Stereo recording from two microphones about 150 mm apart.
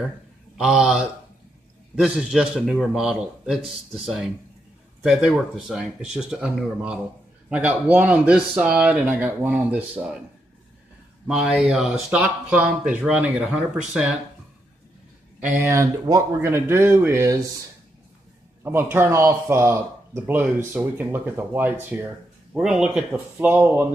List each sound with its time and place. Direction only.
0.6 s a man's voice: 5° right (ahead or behind)
11.2 s a man's voice: 5° right (ahead or behind)
15.5 s speech: 20° right (ahead or behind)
18.6 s speech: 15° right (ahead or behind)